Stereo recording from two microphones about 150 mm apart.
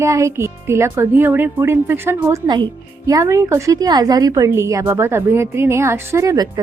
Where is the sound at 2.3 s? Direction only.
30° right (ahead or behind).